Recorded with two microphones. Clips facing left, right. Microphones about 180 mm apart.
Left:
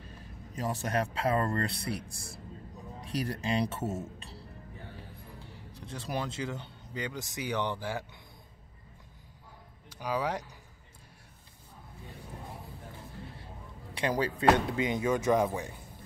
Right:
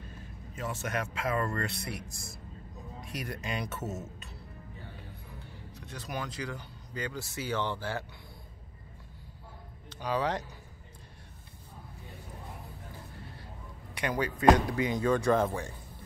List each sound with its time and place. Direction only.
0.6 s speech: 35° left (ahead or behind)
5.7 s speech: 30° left (ahead or behind)
9.8 s speech: 10° left (ahead or behind)
13.9 s speech: 30° left (ahead or behind); by 15.7 s 15° left (ahead or behind)